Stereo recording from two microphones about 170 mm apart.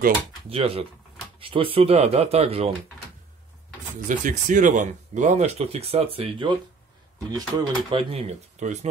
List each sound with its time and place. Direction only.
0.5 s speech: 35° right (ahead or behind)
4.1 s speech: 50° right (ahead or behind); by 8.2 s 30° right (ahead or behind)
8.6 s speech: 45° right (ahead or behind)